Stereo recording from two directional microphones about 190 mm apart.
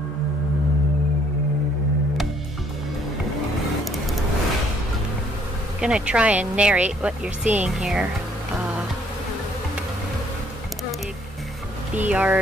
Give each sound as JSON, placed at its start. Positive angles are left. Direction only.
{"t": 5.8, "sound": "speech", "side_deg": -5}
{"t": 11.9, "sound": "speech", "side_deg": -5}